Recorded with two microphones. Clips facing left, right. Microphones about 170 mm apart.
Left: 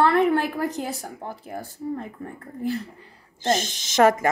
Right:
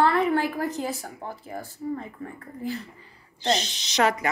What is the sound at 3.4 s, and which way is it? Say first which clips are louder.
Speech: left 2 dB; 45° left (ahead or behind).